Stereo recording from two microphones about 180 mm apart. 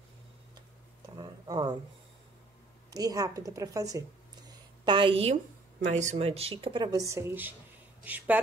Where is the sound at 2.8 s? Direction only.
20° right (ahead or behind).